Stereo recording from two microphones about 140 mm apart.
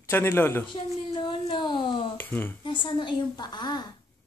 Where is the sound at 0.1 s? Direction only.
15° left (ahead or behind).